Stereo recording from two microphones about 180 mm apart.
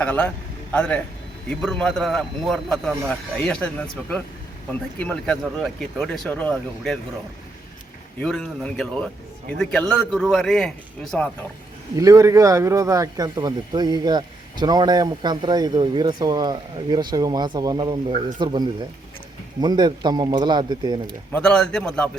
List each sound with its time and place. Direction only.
0.0 s speech: 10° left (ahead or behind)
8.2 s speech: 5° left (ahead or behind)
11.9 s a man's voice: 20° right (ahead or behind)
21.3 s speech: 5° left (ahead or behind)